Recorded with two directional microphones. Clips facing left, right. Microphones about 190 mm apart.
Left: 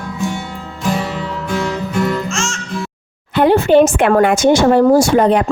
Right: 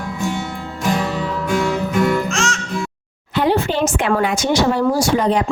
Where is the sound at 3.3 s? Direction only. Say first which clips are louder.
Left 7 dB; 55° left (ahead or behind).